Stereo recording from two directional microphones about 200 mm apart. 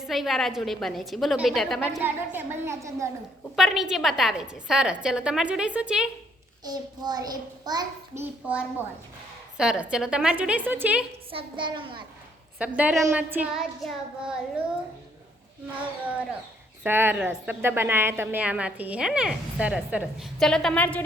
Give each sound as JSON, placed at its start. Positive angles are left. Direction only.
{"t": 0.1, "sound": "a woman's voice", "side_deg": 0}
{"t": 2.0, "sound": "a woman's voice", "side_deg": -10}
{"t": 3.5, "sound": "a woman's voice", "side_deg": 0}
{"t": 6.7, "sound": "a child's voice", "side_deg": -20}
{"t": 11.3, "sound": "a child's voice", "side_deg": -25}
{"t": 12.5, "sound": "a woman's voice", "side_deg": -5}
{"t": 16.8, "sound": "a woman's voice", "side_deg": -10}